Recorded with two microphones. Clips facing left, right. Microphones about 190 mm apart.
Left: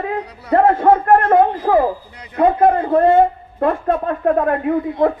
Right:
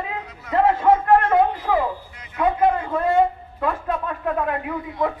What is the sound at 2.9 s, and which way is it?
A man's voice, 55° left (ahead or behind).